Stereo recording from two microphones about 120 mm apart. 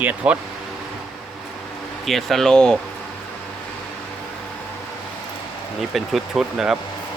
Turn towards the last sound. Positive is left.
turn(degrees=-5)  # may be behind; listen again after turning